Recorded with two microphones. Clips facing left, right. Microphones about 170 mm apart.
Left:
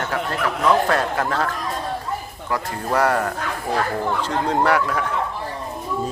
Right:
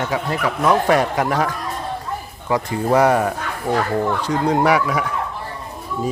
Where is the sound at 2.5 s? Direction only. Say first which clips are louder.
Right 5 dB; 20° right (ahead or behind).